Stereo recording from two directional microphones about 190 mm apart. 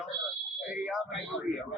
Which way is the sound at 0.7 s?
5° right (ahead or behind).